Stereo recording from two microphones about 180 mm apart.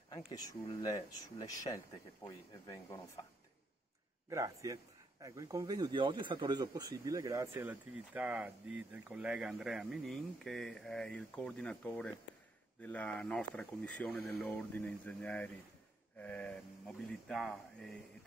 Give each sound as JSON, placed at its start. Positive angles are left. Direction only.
{"t": 0.3, "sound": "speech", "side_deg": 20}
{"t": 4.3, "sound": "speech", "side_deg": -15}